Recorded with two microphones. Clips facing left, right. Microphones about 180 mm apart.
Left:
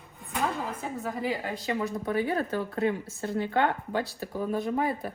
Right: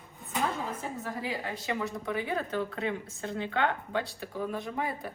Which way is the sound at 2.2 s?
45° left (ahead or behind).